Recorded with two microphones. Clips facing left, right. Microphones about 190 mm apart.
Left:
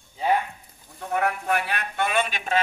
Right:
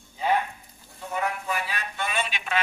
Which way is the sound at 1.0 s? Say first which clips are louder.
Left 4 dB; 60° left (ahead or behind).